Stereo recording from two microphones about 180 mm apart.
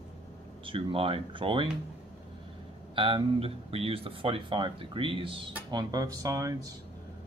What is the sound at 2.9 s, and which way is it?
Speech, 30° right (ahead or behind).